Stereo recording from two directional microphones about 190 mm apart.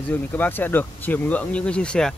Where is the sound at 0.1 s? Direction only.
10° left (ahead or behind).